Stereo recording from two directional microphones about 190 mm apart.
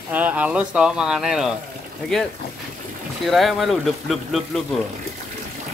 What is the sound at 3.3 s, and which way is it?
Speech, centre (ahead or behind).